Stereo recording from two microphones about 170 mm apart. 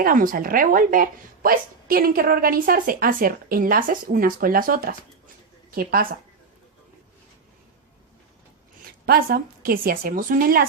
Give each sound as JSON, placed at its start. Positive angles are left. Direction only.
{"t": 0.0, "sound": "a woman's voice", "side_deg": -55}
{"t": 8.8, "sound": "a woman's voice", "side_deg": -60}